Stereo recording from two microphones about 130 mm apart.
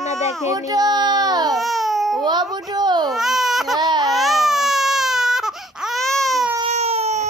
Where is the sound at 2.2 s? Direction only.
35° right (ahead or behind).